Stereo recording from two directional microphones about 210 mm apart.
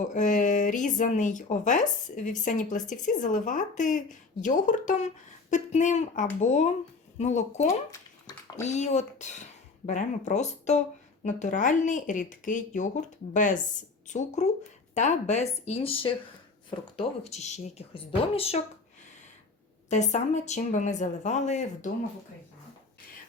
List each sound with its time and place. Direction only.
0.1 s speech: 35° left (ahead or behind)
7.9 s a sound: 15° left (ahead or behind)
8.6 s speech: 35° left (ahead or behind)
19.9 s speech: 35° left (ahead or behind)